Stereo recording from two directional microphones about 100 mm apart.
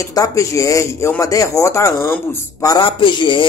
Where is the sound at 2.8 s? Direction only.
55° left (ahead or behind).